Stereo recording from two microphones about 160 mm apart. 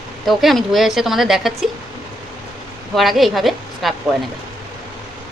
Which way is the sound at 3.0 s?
Centre (ahead or behind).